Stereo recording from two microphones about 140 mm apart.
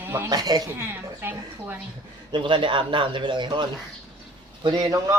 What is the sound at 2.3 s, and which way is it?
A man's voice, 35° right (ahead or behind).